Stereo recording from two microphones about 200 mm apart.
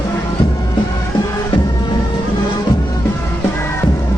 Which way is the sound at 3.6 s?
10° left (ahead or behind).